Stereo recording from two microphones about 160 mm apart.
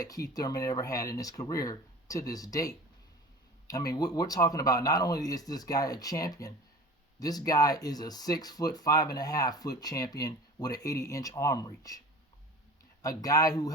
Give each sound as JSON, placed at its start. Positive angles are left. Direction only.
{"t": 0.0, "sound": "speech", "side_deg": 20}